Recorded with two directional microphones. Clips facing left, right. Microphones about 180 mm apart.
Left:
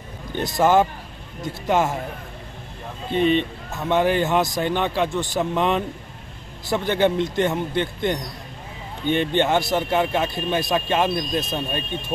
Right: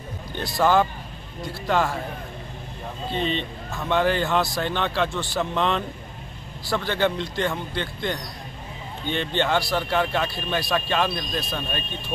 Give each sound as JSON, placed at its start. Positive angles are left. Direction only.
{"t": 0.3, "sound": "speech", "side_deg": 20}
{"t": 3.3, "sound": "a man's voice", "side_deg": 20}